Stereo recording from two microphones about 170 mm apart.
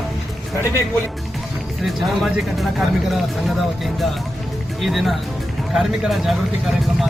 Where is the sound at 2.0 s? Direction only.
Centre (ahead or behind).